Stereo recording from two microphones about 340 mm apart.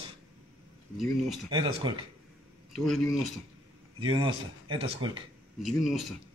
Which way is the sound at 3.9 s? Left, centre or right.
Centre.